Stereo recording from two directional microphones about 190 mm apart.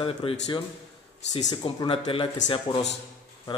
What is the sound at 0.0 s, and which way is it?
Speech, 30° left (ahead or behind).